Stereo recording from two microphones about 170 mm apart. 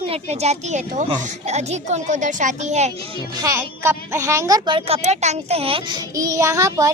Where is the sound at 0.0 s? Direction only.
35° right (ahead or behind).